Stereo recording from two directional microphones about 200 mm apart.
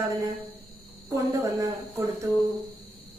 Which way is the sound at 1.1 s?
15° right (ahead or behind).